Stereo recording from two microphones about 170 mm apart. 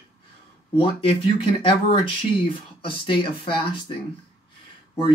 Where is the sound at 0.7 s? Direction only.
30° left (ahead or behind).